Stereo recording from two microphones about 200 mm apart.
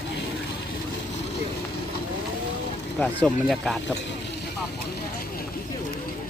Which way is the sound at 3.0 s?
5° left (ahead or behind).